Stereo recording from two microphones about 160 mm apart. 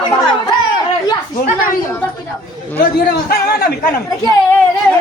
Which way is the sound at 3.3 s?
70° left (ahead or behind).